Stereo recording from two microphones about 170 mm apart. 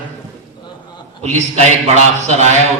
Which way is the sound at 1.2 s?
40° right (ahead or behind).